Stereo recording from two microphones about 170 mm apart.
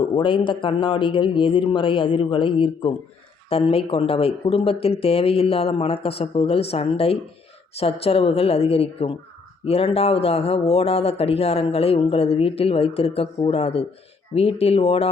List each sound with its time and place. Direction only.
0.0 s speech: 30° left (ahead or behind)